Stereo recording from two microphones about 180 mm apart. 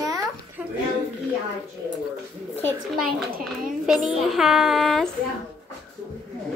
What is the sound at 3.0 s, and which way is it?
A child's voice, centre (ahead or behind).